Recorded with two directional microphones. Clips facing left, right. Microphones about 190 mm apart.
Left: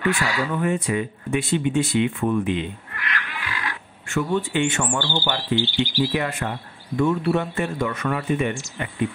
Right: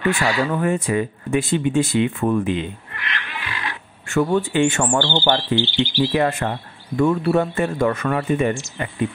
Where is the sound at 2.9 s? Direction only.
25° right (ahead or behind).